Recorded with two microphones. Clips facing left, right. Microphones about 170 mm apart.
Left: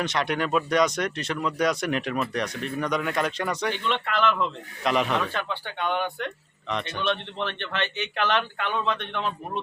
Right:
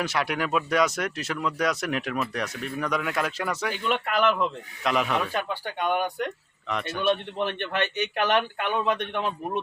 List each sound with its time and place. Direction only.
0.0 s a man's voice: 5° right (ahead or behind)
4.8 s a man's voice: centre (ahead or behind)